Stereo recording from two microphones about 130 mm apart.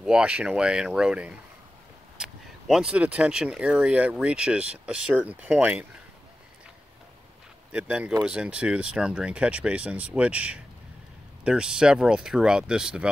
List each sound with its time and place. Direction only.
0.0 s speech: 5° right (ahead or behind)
7.7 s speech: 10° right (ahead or behind)